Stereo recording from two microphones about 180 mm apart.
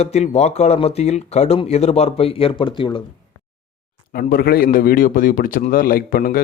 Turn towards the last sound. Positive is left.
turn(degrees=55)  # may be behind; listen again after turning